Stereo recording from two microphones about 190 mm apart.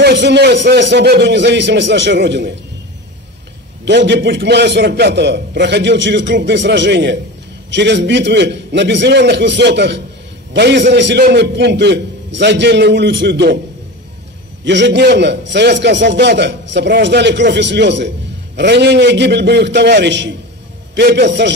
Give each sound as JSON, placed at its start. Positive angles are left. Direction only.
{"t": 0.0, "sound": "a man's voice", "side_deg": -65}
{"t": 3.8, "sound": "a man's voice", "side_deg": -65}
{"t": 14.6, "sound": "a man's voice", "side_deg": -65}